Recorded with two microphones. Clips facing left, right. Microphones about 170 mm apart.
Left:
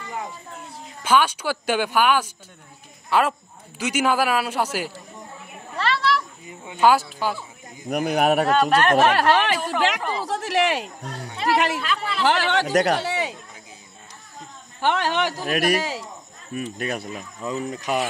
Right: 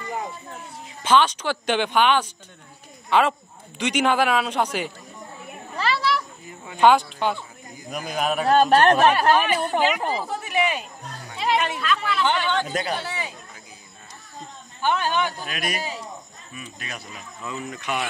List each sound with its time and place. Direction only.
1.0 s a man's voice: 10° left (ahead or behind)
5.8 s a sound: 5° right (ahead or behind)
6.4 s speech: 20° left (ahead or behind)
6.8 s speech: 5° left (ahead or behind)
7.9 s speech: 65° left (ahead or behind)
8.5 s speech: 35° right (ahead or behind)
8.9 s speech: 80° left
11.8 s speech: 30° left (ahead or behind)
12.3 s a man's voice: 80° left
14.8 s speech: 80° left
15.4 s speech: 55° left (ahead or behind); by 16.0 s 75° left (ahead or behind)
16.5 s speech: 55° left (ahead or behind)
17.4 s speech: 35° left (ahead or behind)